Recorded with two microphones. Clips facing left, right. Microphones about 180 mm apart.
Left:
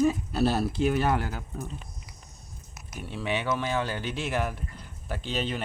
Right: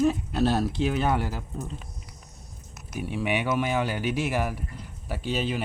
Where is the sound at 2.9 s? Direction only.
10° right (ahead or behind).